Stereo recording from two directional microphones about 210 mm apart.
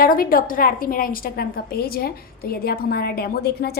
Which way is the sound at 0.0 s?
45° left (ahead or behind).